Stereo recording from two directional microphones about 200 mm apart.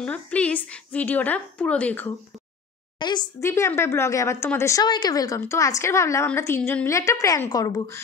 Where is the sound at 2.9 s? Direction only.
20° left (ahead or behind).